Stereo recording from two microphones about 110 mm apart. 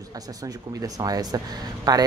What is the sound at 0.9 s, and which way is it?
Speech, 35° right (ahead or behind).